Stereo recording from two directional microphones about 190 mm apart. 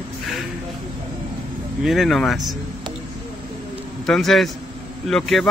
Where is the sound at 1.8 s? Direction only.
Centre (ahead or behind).